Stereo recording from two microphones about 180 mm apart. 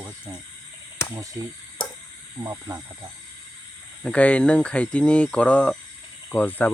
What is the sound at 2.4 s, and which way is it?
Speech, 15° right (ahead or behind).